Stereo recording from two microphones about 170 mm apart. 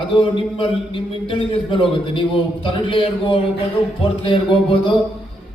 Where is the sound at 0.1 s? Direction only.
30° left (ahead or behind).